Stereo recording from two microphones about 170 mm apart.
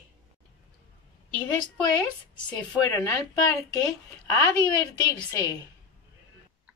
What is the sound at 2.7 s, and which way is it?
Speech, 15° left (ahead or behind).